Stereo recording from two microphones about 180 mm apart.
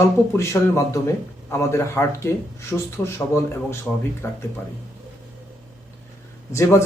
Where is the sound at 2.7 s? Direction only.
Centre (ahead or behind).